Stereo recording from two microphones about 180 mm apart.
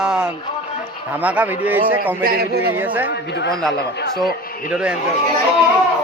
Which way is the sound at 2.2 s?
60° right (ahead or behind).